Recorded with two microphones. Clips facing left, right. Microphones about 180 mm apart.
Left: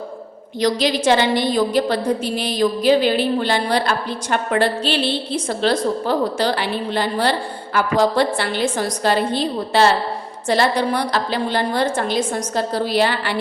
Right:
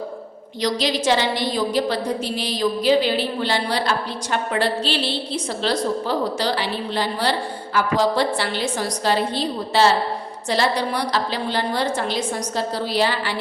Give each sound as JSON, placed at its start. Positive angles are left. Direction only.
{"t": 0.6, "sound": "a woman's voice", "side_deg": 55}